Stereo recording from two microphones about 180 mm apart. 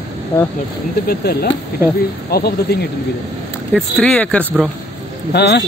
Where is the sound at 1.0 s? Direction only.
60° left (ahead or behind).